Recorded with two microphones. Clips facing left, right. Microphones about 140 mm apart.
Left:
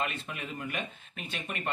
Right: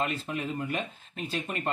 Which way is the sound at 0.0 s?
35° right (ahead or behind).